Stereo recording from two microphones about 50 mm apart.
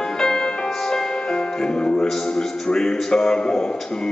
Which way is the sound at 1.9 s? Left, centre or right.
Centre.